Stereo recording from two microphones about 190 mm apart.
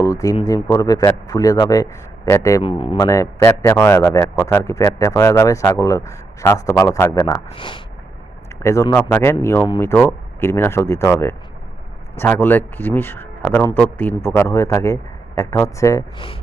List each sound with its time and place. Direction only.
0.0 s a man's voice: 15° left (ahead or behind)
2.6 s a man's voice: 30° left (ahead or behind)
3.1 s a man's voice: 15° left (ahead or behind)
8.6 s speech: 15° left (ahead or behind)
16.1 s a man's voice: 30° left (ahead or behind)